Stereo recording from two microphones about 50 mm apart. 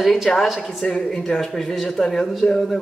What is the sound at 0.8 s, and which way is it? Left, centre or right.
Speech, centre.